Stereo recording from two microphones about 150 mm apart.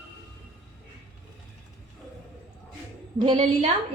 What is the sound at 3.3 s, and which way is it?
Speech, 40° right (ahead or behind).